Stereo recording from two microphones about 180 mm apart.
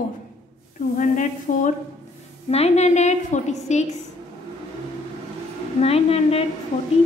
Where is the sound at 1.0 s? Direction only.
45° left (ahead or behind).